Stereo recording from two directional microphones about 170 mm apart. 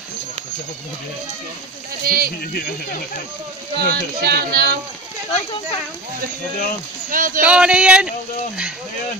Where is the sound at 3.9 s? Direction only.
65° right (ahead or behind).